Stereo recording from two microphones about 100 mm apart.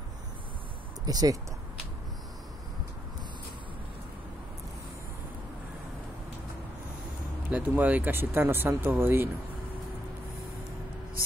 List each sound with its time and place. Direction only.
1.0 s speech: 40° right (ahead or behind)
7.5 s speech: 15° right (ahead or behind)